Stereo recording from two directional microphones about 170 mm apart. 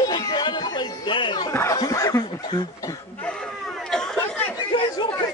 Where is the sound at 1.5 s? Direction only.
15° left (ahead or behind).